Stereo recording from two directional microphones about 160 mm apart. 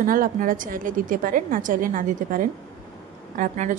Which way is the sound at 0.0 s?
60° right (ahead or behind).